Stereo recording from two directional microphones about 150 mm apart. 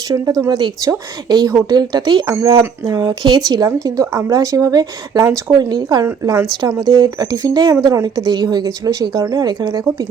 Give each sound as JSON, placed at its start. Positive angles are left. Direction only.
{"t": 0.1, "sound": "speech", "side_deg": -25}